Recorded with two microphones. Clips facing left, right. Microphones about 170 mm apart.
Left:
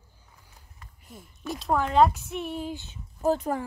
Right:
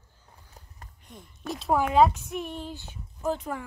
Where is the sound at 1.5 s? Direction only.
Centre (ahead or behind).